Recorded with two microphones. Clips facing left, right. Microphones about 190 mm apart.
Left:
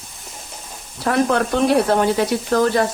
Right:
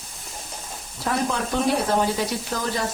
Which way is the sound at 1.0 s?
70° left (ahead or behind).